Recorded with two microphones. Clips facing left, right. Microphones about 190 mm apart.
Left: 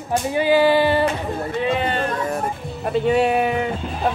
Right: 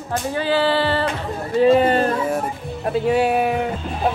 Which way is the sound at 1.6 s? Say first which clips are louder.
Right 9 dB; 40° right (ahead or behind).